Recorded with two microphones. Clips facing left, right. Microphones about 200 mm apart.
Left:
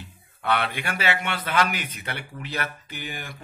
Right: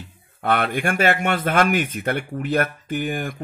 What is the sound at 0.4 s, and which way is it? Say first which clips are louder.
Speech: right 5 dB; 50° right (ahead or behind).